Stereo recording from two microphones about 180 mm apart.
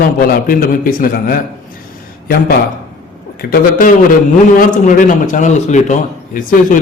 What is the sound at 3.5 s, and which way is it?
Speech, 50° left (ahead or behind).